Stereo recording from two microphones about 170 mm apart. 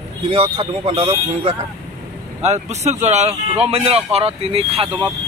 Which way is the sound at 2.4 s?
40° right (ahead or behind).